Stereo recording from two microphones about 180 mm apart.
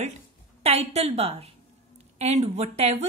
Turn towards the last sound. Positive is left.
turn(degrees=-35)  # may be behind; listen again after turning